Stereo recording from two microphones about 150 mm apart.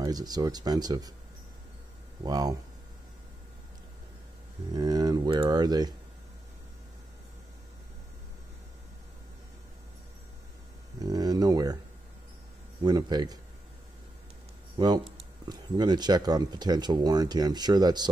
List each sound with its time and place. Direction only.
0.0 s speech: 25° right (ahead or behind)
2.2 s speech: 25° right (ahead or behind)
4.7 s speech: 25° right (ahead or behind)
11.0 s a sound: 25° right (ahead or behind)
12.8 s speech: 25° right (ahead or behind)
14.8 s speech: 30° right (ahead or behind)